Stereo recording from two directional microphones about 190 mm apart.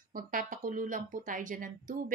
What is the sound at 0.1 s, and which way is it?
Speech, 45° right (ahead or behind).